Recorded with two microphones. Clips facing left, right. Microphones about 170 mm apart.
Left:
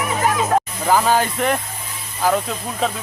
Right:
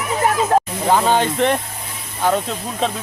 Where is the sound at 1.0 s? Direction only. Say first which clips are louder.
Right 1 dB; 25° right (ahead or behind).